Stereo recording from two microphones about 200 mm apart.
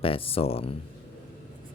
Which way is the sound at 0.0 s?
30° left (ahead or behind).